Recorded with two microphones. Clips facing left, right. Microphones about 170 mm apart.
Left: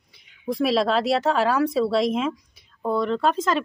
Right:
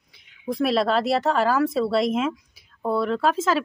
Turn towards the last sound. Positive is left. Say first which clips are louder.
# even
turn(degrees=-5)  # may be behind; listen again after turning